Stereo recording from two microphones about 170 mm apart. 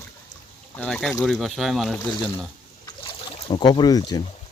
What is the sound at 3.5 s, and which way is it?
Speech, 25° left (ahead or behind).